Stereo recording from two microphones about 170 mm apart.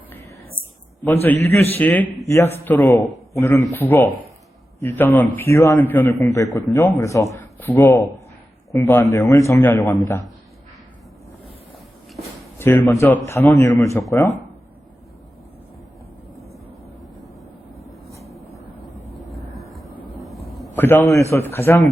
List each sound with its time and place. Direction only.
1.0 s a man's voice: 10° left (ahead or behind)
12.5 s a man's voice: 10° left (ahead or behind)
20.7 s a man's voice: 10° left (ahead or behind)